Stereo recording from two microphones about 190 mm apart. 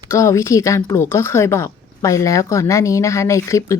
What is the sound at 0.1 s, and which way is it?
Speech, 15° left (ahead or behind).